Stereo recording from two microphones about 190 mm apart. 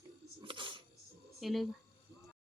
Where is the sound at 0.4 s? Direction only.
25° right (ahead or behind).